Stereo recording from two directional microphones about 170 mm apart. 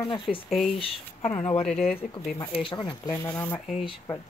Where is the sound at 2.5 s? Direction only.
30° left (ahead or behind).